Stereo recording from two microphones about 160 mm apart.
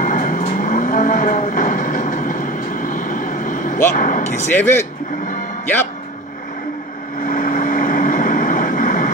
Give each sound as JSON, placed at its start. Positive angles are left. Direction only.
{"t": 0.0, "sound": "train", "side_deg": 60}
{"t": 3.9, "sound": "speech", "side_deg": 55}
{"t": 4.5, "sound": "speech", "side_deg": 10}
{"t": 7.2, "sound": "vehicle", "side_deg": 55}